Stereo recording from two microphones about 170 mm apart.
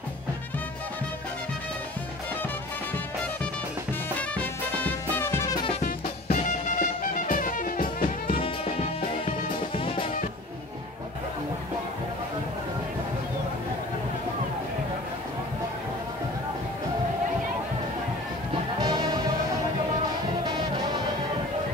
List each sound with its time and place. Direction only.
4.2 s music: 10° left (ahead or behind)
5.8 s music: 40° left (ahead or behind)
8.4 s music: 35° left (ahead or behind)
18.8 s music: 25° right (ahead or behind)